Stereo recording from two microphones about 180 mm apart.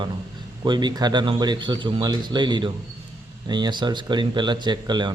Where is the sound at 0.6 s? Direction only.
25° right (ahead or behind).